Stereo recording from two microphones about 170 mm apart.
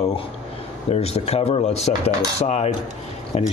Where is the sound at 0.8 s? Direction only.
40° left (ahead or behind).